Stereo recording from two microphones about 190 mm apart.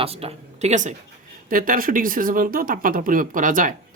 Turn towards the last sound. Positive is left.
turn(degrees=-45)  # may be behind; listen again after turning